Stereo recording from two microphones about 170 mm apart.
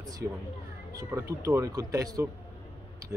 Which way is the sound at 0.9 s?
20° right (ahead or behind).